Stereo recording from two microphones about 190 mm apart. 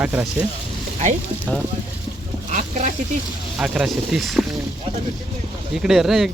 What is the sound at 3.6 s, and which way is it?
Speech, centre (ahead or behind).